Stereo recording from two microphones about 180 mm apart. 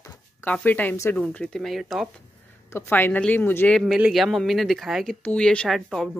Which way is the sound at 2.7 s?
15° left (ahead or behind).